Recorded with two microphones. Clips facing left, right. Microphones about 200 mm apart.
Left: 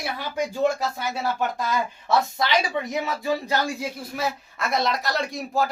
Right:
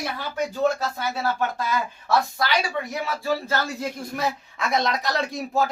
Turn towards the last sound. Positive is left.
turn(degrees=0)  # may be behind; listen again after turning